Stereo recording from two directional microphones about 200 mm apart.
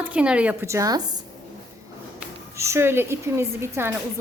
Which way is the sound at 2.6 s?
15° right (ahead or behind).